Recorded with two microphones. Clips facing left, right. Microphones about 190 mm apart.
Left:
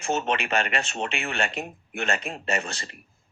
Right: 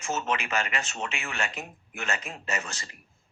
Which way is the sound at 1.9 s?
60° left (ahead or behind).